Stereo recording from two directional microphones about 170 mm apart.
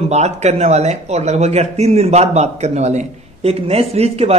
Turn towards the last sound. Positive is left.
turn(degrees=-35)  # may be behind; listen again after turning